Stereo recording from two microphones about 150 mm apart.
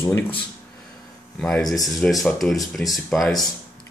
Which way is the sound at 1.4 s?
5° left (ahead or behind).